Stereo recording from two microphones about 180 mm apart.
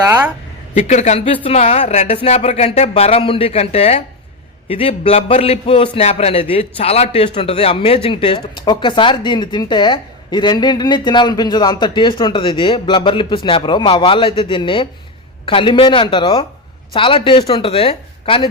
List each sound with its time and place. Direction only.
0.8 s speech: 40° left (ahead or behind)